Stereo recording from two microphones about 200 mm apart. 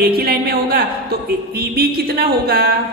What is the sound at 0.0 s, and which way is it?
A woman's voice, 50° right (ahead or behind).